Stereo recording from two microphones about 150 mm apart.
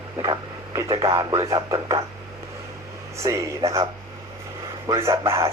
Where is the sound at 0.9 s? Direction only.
35° right (ahead or behind).